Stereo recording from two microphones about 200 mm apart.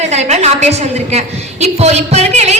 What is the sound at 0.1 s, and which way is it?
A woman's voice, 35° right (ahead or behind).